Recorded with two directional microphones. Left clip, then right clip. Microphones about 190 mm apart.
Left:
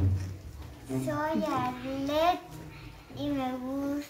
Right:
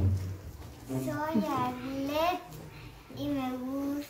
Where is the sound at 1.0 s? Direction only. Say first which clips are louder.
Left 2 dB; centre (ahead or behind).